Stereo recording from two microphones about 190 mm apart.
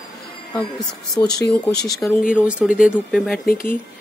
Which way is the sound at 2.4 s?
5° right (ahead or behind).